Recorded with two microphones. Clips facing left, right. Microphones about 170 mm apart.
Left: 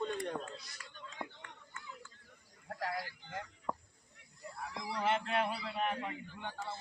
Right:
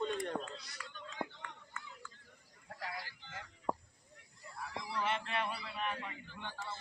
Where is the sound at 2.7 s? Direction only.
55° left (ahead or behind).